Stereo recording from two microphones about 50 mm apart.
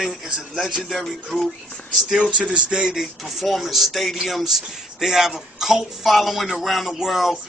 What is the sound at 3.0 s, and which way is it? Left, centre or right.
Speech, centre.